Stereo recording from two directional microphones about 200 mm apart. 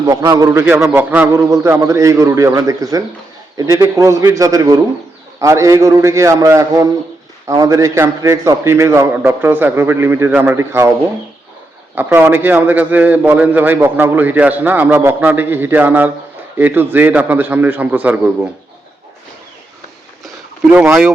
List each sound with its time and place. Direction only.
0.0 s a man's voice: 15° right (ahead or behind)
0.6 s a man's voice: 5° right (ahead or behind)
11.9 s a man's voice: 10° right (ahead or behind)
20.7 s a man's voice: 10° right (ahead or behind)